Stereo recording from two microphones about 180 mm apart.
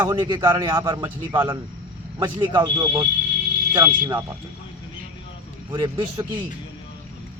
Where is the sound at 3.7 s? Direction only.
25° right (ahead or behind).